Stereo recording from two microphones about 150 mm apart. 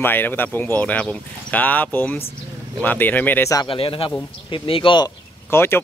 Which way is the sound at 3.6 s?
35° left (ahead or behind).